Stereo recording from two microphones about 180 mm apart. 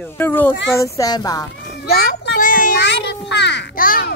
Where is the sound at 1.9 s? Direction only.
60° left (ahead or behind).